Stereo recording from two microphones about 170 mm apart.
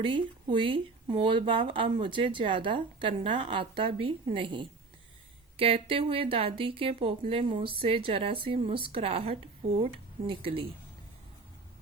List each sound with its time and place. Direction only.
0.0 s speech: 30° right (ahead or behind)